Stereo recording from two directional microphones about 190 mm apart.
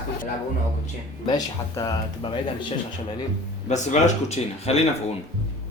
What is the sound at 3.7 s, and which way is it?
Speech, 40° left (ahead or behind).